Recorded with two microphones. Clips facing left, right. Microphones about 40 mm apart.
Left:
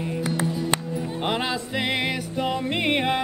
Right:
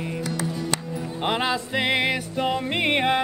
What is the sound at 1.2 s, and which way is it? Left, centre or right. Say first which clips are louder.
Music: right 3 dB; centre.